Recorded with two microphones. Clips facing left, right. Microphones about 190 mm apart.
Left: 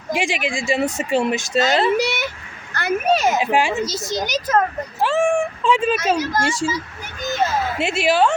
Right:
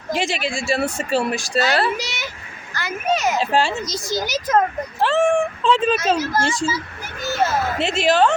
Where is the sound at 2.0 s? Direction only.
60° left (ahead or behind).